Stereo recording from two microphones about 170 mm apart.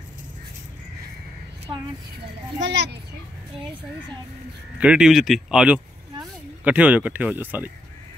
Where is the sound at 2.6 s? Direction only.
90° right.